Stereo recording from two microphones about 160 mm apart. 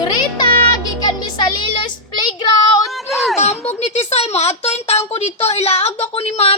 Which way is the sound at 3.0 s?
Centre (ahead or behind).